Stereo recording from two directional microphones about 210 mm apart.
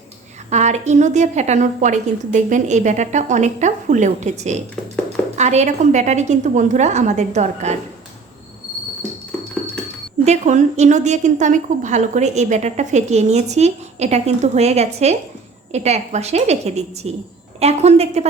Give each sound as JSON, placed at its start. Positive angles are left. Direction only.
{"t": 0.5, "sound": "a woman's voice", "side_deg": -35}
{"t": 10.2, "sound": "a woman's voice", "side_deg": -35}